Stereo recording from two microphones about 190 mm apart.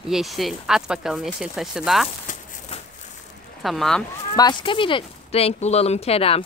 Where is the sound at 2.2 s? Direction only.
40° left (ahead or behind).